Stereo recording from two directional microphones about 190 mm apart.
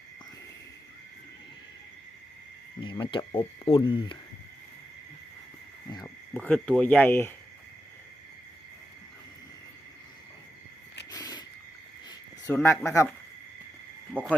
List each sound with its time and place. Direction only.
2.8 s speech: 25° left (ahead or behind)
6.0 s speech: 5° left (ahead or behind)
11.1 s a sound: 20° left (ahead or behind)
12.6 s speech: 15° left (ahead or behind)
14.1 s speech: 5° left (ahead or behind)